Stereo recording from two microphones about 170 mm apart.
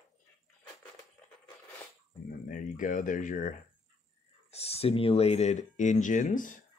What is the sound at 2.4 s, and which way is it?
Speech, 50° left (ahead or behind).